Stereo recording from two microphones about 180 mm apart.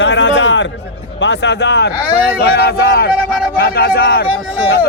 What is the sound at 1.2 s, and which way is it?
Speech, 80° left.